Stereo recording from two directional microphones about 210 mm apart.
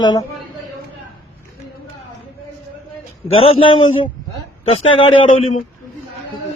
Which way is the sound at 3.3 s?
25° left (ahead or behind).